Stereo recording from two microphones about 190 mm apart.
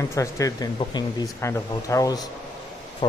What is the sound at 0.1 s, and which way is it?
Speech, 15° left (ahead or behind).